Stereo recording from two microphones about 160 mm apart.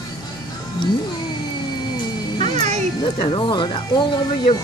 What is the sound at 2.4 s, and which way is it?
Music, 50° right (ahead or behind).